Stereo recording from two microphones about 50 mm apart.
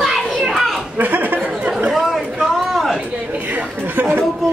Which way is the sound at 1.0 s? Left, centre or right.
Right.